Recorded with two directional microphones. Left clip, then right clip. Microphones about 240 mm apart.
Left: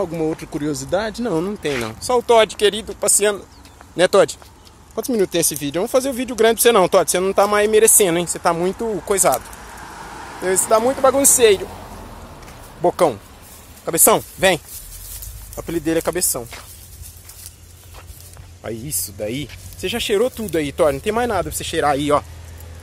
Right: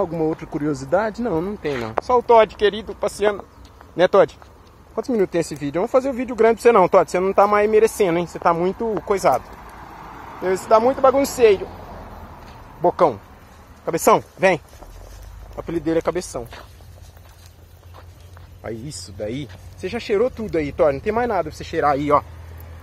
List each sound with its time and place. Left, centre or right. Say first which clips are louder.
0.0 s speech: even; centre
10.4 s speech: even; centre
12.8 s speech: even; centre
18.6 s speech: left 3 dB; left